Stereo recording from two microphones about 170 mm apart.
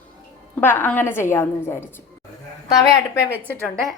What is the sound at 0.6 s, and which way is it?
A woman's voice, 10° left (ahead or behind).